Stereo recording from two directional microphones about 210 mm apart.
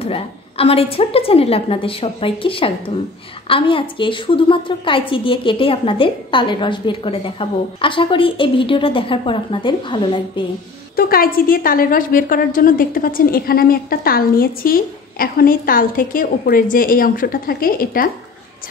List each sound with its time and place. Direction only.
0.0 s a woman's voice: 25° left (ahead or behind)
11.0 s a woman's voice: 45° left (ahead or behind)